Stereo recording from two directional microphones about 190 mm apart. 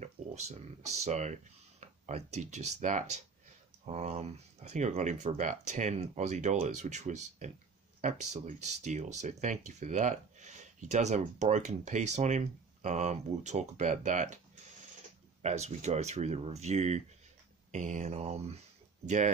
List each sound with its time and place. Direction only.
0.0 s speech: 35° right (ahead or behind)
15.4 s speech: 35° right (ahead or behind)